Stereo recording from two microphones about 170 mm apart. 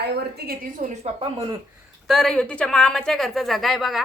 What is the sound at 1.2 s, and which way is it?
Speech, 35° right (ahead or behind).